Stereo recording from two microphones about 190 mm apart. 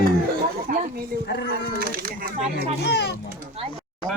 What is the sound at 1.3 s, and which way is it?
Speech, 60° left (ahead or behind).